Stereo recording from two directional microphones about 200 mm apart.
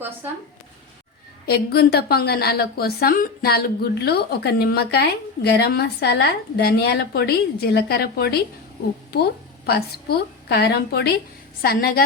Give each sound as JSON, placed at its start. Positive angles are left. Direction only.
{"t": 1.5, "sound": "a woman's voice", "side_deg": 50}